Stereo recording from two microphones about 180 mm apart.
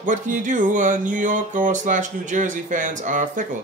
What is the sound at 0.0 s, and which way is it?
Speech, 45° right (ahead or behind).